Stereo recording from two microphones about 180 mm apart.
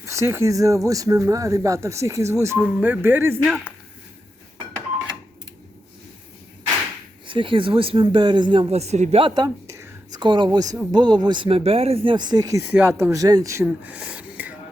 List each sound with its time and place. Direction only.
0.0 s speech: 15° right (ahead or behind)
7.3 s speech: 30° right (ahead or behind); by 14.5 s 5° right (ahead or behind)